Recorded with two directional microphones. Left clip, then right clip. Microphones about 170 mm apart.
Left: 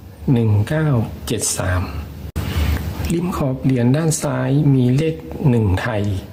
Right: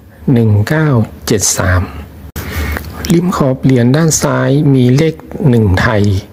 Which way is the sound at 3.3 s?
30° right (ahead or behind).